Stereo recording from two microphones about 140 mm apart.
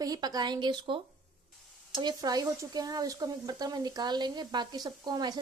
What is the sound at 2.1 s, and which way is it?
Speech, 25° right (ahead or behind).